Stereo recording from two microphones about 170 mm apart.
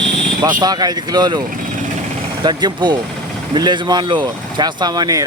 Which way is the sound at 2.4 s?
25° right (ahead or behind).